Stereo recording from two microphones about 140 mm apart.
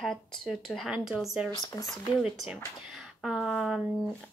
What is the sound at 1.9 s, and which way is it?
A woman's voice, centre (ahead or behind).